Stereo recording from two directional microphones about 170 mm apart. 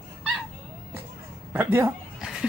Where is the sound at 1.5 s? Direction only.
10° right (ahead or behind).